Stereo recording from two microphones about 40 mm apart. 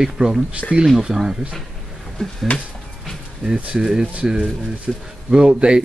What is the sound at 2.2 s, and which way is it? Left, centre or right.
Speech, centre.